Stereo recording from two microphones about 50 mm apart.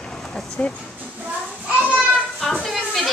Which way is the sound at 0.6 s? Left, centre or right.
Left.